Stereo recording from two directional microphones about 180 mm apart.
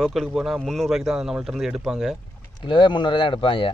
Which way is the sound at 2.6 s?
25° left (ahead or behind).